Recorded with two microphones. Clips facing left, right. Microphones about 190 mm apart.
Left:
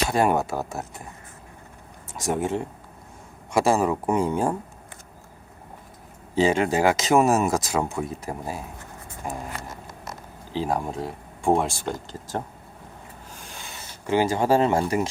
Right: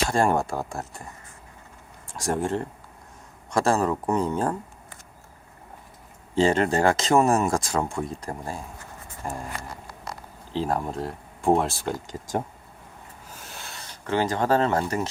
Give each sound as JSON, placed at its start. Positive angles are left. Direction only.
{"t": 0.1, "sound": "speech", "side_deg": 5}
{"t": 2.1, "sound": "speech", "side_deg": 0}
{"t": 6.3, "sound": "speech", "side_deg": 5}
{"t": 9.6, "sound": "a sound", "side_deg": 20}
{"t": 10.5, "sound": "speech", "side_deg": 0}
{"t": 13.3, "sound": "rub", "side_deg": -5}
{"t": 14.1, "sound": "speech", "side_deg": 10}